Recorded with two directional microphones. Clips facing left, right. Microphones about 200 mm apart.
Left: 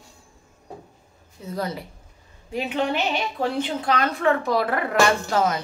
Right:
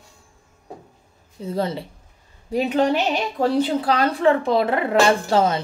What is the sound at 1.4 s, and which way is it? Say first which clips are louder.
Speech: right 5 dB; 30° right (ahead or behind).